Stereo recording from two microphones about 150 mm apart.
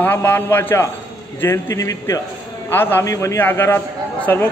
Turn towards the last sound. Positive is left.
turn(degrees=15)  # may be behind; listen again after turning